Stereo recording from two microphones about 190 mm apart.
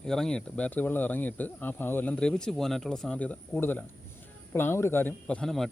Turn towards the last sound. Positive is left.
turn(degrees=0)  # may be behind; listen again after turning